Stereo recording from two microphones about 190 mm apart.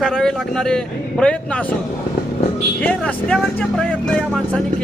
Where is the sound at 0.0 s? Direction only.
5° left (ahead or behind).